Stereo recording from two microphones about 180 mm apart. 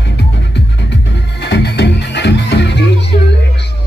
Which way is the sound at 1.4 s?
65° left (ahead or behind).